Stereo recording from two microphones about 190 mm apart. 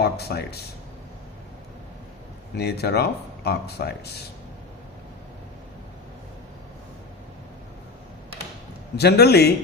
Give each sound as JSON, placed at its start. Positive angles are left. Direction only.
{"t": 0.0, "sound": "speech", "side_deg": 55}
{"t": 2.6, "sound": "speech", "side_deg": 60}
{"t": 9.0, "sound": "speech", "side_deg": 55}